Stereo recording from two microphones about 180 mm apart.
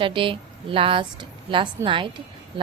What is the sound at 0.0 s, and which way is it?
A woman's voice, 30° right (ahead or behind).